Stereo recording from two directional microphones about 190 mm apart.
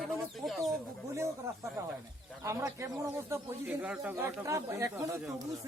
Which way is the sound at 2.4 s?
15° right (ahead or behind).